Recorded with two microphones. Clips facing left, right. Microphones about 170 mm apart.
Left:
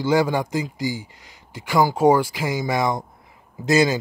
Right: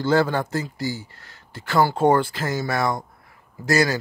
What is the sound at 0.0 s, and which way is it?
Speech, 15° left (ahead or behind).